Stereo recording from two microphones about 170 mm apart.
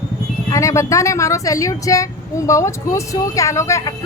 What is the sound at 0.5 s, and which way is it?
Speech, 20° left (ahead or behind).